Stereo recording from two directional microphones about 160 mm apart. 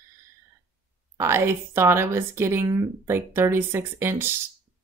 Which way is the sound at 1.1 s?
15° right (ahead or behind).